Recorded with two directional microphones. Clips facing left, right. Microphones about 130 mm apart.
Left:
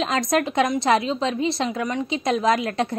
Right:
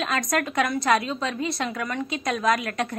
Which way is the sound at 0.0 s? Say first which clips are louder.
Left 4 dB; 25° left (ahead or behind).